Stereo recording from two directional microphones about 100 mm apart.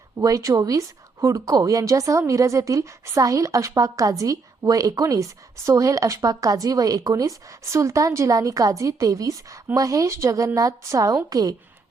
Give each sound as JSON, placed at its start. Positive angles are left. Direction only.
{"t": 0.2, "sound": "speech", "side_deg": -35}